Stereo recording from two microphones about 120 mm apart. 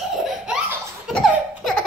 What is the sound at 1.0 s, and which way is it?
Baby laughter, 5° left (ahead or behind).